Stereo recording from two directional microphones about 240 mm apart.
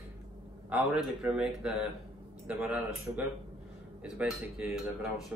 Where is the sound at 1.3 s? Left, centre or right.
Centre.